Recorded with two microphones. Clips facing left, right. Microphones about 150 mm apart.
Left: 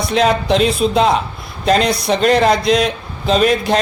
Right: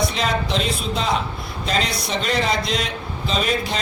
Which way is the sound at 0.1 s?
65° left (ahead or behind).